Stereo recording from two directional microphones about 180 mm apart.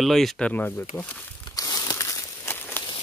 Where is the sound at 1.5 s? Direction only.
20° left (ahead or behind).